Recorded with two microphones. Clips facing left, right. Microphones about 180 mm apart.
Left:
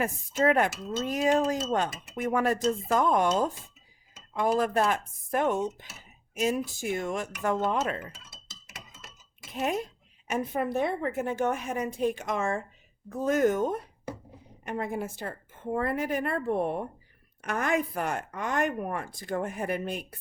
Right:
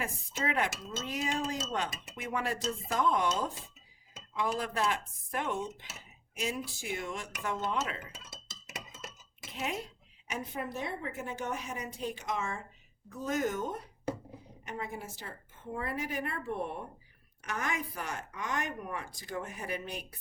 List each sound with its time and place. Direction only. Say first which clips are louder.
0.0 s dishes: left 10 dB; 45° left (ahead or behind)
10.2 s dishes: left 9 dB; 55° left (ahead or behind)
14.6 s a woman's voice: left 8 dB; 55° left (ahead or behind)